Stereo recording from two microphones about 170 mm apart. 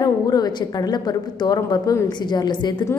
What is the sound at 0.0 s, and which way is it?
A woman's voice, 25° left (ahead or behind).